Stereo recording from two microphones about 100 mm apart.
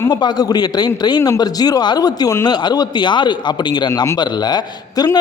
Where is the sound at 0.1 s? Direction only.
45° left (ahead or behind).